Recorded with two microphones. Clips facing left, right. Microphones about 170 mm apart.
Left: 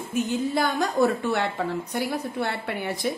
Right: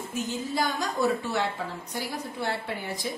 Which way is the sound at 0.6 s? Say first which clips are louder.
Left 5 dB; 55° left (ahead or behind).